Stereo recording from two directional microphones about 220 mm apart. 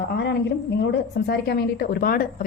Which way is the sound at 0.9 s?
50° left (ahead or behind).